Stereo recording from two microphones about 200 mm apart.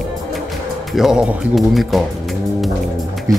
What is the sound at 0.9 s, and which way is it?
Speech, 5° right (ahead or behind).